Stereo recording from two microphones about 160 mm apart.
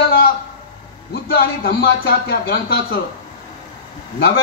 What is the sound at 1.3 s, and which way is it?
Speech, 75° left (ahead or behind).